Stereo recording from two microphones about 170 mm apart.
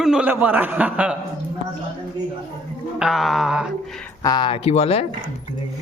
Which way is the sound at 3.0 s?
Centre (ahead or behind).